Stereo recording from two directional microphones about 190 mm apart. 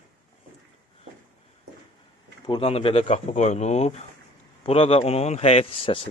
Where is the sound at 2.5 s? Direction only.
30° left (ahead or behind).